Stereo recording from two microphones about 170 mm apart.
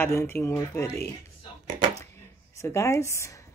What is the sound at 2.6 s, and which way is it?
Speech, 15° left (ahead or behind).